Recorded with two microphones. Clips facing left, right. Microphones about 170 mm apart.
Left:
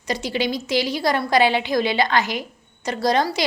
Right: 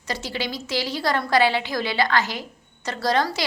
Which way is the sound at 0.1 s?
15° left (ahead or behind).